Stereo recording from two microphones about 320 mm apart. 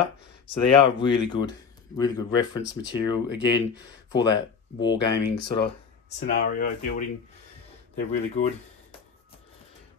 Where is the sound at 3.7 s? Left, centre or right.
Left.